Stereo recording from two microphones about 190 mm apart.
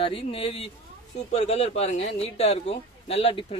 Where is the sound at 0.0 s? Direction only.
30° left (ahead or behind).